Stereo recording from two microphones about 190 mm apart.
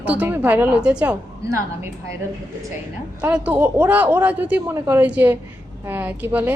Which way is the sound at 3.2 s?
5° right (ahead or behind).